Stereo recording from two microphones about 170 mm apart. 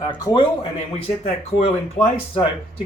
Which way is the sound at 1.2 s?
40° left (ahead or behind).